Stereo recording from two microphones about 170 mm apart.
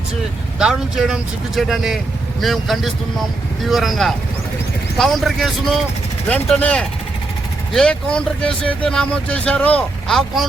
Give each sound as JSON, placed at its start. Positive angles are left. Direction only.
{"t": 0.6, "sound": "speech", "side_deg": 0}